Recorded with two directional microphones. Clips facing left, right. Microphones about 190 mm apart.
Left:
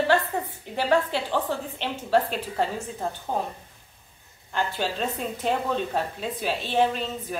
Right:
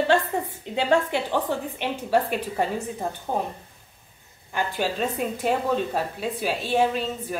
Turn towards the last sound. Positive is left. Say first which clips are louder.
# right 1 dB
turn(degrees=-5)  # may be behind; listen again after turning